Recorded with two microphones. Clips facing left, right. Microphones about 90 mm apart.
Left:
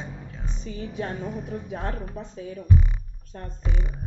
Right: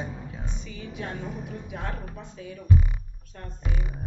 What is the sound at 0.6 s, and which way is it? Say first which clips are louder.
A woman's voice: left 7 dB; 35° left (ahead or behind).